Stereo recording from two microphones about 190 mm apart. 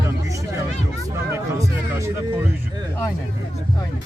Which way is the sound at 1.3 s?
15° right (ahead or behind).